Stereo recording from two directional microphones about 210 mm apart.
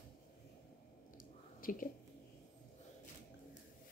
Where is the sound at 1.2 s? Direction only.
40° left (ahead or behind).